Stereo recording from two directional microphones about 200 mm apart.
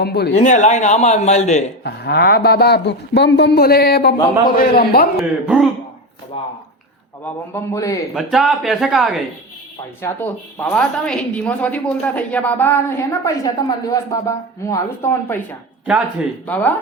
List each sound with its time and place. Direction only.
0.0 s a man's voice: 55° left (ahead or behind)
0.3 s speech: 35° left (ahead or behind)
1.8 s a man's voice: 55° left (ahead or behind)
5.1 s speech: centre (ahead or behind)
6.3 s speech: 25° left (ahead or behind)
7.5 s a woman's voice: 15° left (ahead or behind)
8.1 s speech: centre (ahead or behind)
10.0 s a woman's voice: 10° left (ahead or behind)